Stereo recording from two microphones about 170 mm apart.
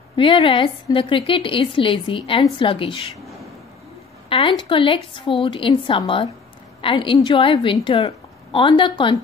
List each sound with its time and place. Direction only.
0.1 s a woman's voice: 30° left (ahead or behind)
4.3 s a woman's voice: 30° left (ahead or behind)